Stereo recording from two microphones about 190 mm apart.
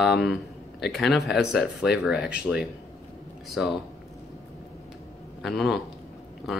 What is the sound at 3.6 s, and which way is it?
Speech, 5° right (ahead or behind).